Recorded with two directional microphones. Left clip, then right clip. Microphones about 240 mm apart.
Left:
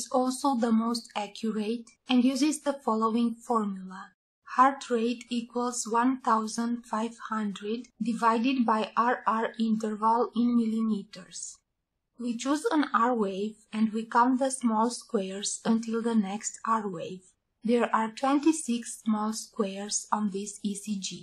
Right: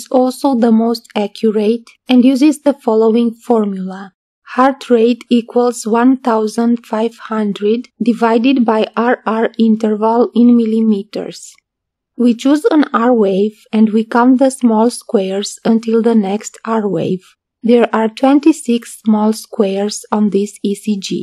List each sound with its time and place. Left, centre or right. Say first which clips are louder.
0.0 s speech: right 14 dB; right